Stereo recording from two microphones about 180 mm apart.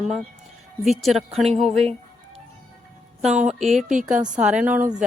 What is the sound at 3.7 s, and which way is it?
Speech, 40° right (ahead or behind).